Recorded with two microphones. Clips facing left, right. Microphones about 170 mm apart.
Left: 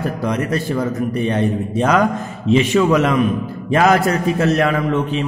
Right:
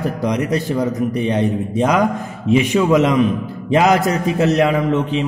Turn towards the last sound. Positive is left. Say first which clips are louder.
# right 1 dB
turn(degrees=-20)  # may be behind; listen again after turning